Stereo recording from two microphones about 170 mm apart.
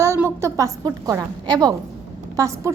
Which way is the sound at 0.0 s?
15° right (ahead or behind).